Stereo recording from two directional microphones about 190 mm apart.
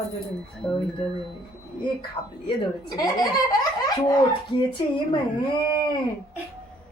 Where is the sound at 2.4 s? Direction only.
20° left (ahead or behind).